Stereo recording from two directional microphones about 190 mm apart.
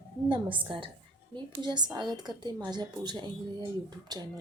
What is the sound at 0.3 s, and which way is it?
Speech, 25° right (ahead or behind).